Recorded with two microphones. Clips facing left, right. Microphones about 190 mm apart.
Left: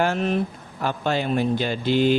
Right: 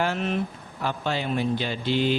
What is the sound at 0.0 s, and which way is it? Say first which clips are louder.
Speech: left 4 dB; 45° left (ahead or behind).